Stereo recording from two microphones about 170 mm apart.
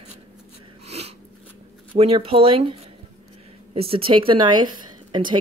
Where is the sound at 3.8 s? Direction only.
35° right (ahead or behind).